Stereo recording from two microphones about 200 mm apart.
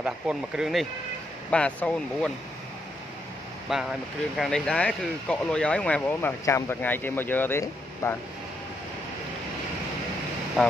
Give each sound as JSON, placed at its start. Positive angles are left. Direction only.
{"t": 0.0, "sound": "speech", "side_deg": -5}
{"t": 3.7, "sound": "speech", "side_deg": 0}
{"t": 10.6, "sound": "speech", "side_deg": 0}